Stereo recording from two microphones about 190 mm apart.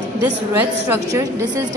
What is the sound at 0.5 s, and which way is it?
Speech, 10° right (ahead or behind).